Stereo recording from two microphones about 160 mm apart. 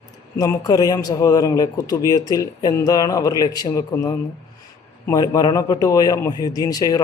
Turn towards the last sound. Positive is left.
turn(degrees=25)  # may be behind; listen again after turning